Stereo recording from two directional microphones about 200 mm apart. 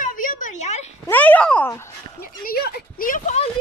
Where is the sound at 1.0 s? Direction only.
10° left (ahead or behind).